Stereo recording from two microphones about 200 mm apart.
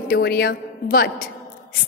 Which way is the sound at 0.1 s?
50° left (ahead or behind).